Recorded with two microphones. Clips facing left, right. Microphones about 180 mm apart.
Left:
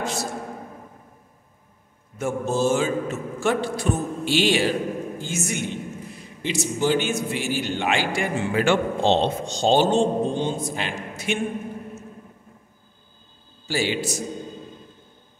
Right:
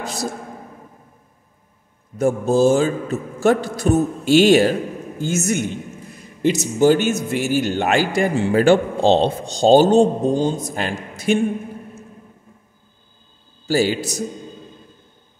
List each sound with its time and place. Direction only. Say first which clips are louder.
0.0 s a man's voice: right 1 dB; 35° right (ahead or behind)
2.1 s a man's voice: right 7 dB; 35° right (ahead or behind)
13.7 s a man's voice: right 6 dB; 40° right (ahead or behind)